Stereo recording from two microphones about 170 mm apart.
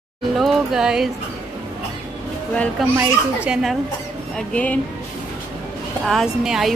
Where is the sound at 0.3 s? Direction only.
Centre (ahead or behind).